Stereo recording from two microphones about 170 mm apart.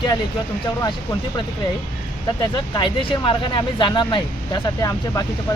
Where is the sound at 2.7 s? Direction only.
30° left (ahead or behind).